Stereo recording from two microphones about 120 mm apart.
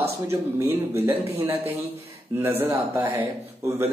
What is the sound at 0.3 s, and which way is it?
Speech, 20° right (ahead or behind).